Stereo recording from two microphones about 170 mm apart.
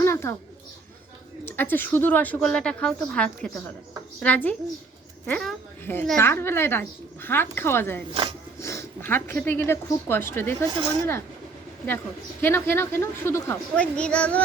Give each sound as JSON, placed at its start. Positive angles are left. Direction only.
{"t": 0.0, "sound": "a sound", "side_deg": 15}
{"t": 1.5, "sound": "a woman's voice", "side_deg": 10}
{"t": 12.4, "sound": "a woman's voice", "side_deg": 15}